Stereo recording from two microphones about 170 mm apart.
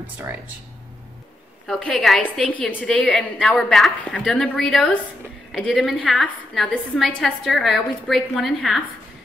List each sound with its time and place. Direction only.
1.7 s a woman's voice: centre (ahead or behind)